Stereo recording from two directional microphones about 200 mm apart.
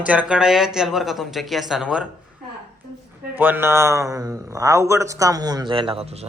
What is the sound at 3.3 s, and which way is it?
A man's voice, 10° right (ahead or behind).